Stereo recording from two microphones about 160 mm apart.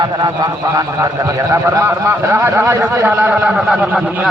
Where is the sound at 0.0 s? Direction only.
25° right (ahead or behind).